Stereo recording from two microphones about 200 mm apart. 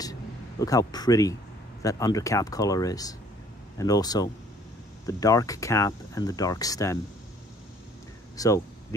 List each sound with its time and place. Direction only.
0.0 s a sound: 20° left (ahead or behind)
1.8 s speech: 15° left (ahead or behind)
8.4 s speech: 15° left (ahead or behind)